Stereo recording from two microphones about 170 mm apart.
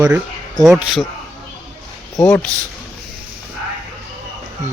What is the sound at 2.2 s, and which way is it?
Speech, 5° left (ahead or behind).